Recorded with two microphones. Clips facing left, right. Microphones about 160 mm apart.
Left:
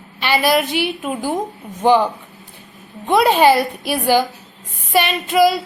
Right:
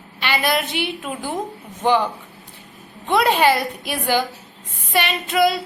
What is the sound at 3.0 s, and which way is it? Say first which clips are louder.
A woman's voice: left 4 dB; 20° left (ahead or behind).